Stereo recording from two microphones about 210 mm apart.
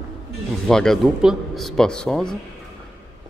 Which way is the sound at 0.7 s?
Centre (ahead or behind).